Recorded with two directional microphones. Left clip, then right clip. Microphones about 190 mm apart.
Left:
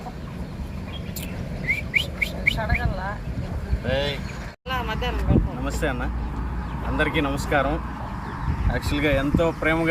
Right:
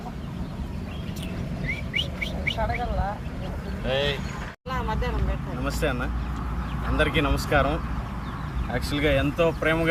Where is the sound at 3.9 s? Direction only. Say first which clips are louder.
Even; 55° right (ahead or behind).